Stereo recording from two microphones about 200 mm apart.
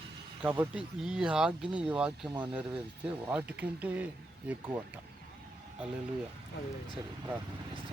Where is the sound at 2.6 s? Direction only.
5° right (ahead or behind).